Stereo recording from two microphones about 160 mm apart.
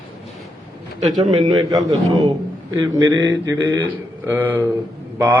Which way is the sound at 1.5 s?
25° right (ahead or behind).